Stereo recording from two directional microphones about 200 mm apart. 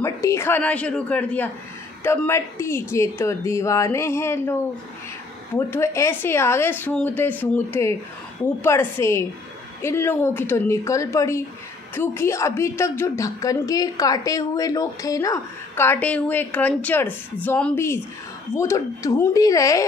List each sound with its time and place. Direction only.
0.0 s a woman's voice: 15° left (ahead or behind)